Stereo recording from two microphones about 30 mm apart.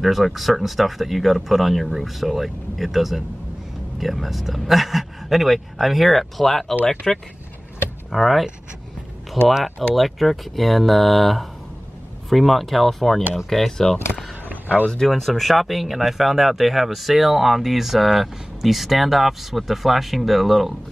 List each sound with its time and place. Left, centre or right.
0.0 s speech: centre
8.1 s speech: centre
14.5 s a sound: right
15.0 s speech: centre